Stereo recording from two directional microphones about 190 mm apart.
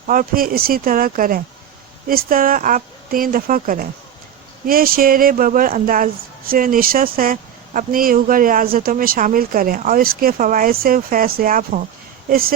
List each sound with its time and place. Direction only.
0.1 s speech: 50° right (ahead or behind)